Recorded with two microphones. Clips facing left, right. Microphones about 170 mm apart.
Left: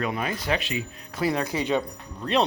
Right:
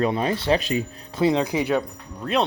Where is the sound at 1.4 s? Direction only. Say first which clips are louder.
Right 3 dB; 10° right (ahead or behind).